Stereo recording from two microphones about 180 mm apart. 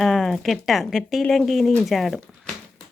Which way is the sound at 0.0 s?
Centre (ahead or behind).